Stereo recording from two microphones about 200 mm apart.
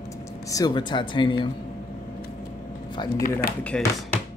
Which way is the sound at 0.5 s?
20° left (ahead or behind).